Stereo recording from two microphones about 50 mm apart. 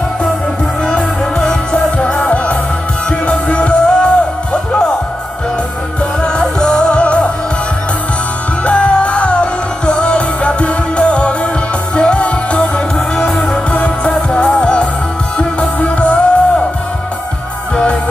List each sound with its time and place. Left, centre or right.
1.7 s music: centre
6.2 s music: centre
8.6 s music: left